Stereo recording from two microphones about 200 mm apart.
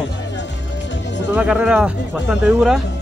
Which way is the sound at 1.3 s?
5° right (ahead or behind).